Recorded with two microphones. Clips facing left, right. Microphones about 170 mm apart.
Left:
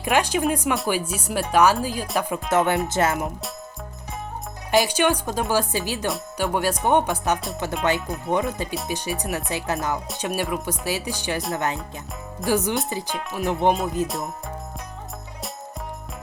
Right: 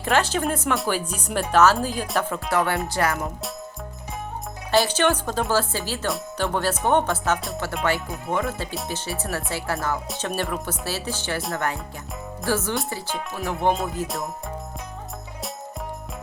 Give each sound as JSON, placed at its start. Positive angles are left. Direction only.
{"t": 0.0, "sound": "speech", "side_deg": 15}
{"t": 2.2, "sound": "music", "side_deg": 20}
{"t": 4.7, "sound": "speech", "side_deg": 15}
{"t": 11.5, "sound": "music", "side_deg": 20}
{"t": 12.5, "sound": "speech", "side_deg": 15}
{"t": 13.3, "sound": "music", "side_deg": 20}
{"t": 14.0, "sound": "speech", "side_deg": 20}